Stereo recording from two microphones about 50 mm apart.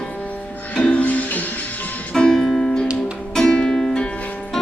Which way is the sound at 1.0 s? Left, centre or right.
Left.